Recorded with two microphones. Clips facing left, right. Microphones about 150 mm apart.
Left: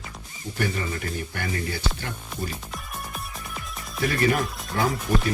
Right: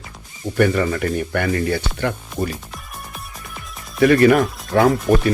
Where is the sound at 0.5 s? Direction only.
70° right (ahead or behind).